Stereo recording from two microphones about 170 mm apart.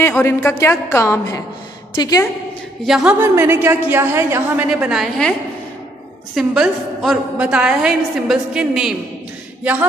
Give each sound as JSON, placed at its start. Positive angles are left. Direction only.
{"t": 0.2, "sound": "a woman's voice", "side_deg": 15}
{"t": 2.8, "sound": "a woman's voice", "side_deg": 0}
{"t": 4.6, "sound": "a woman's voice", "side_deg": -5}
{"t": 6.3, "sound": "a woman's voice", "side_deg": -5}